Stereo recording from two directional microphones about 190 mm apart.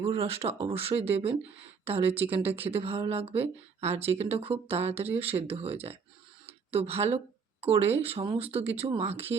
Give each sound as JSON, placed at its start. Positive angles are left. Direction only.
{"t": 0.0, "sound": "speech", "side_deg": -30}